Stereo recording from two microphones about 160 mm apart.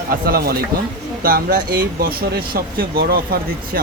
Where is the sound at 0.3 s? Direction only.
70° right (ahead or behind).